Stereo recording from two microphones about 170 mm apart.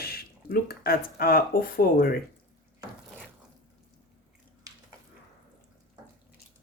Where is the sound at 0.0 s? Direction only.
65° left (ahead or behind).